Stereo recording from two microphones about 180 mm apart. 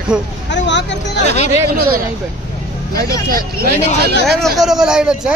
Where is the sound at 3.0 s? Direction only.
55° right (ahead or behind).